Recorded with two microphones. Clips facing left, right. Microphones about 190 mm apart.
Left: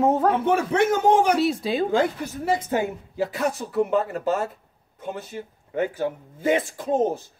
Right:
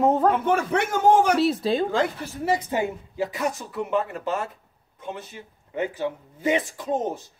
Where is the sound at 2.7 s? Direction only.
15° right (ahead or behind).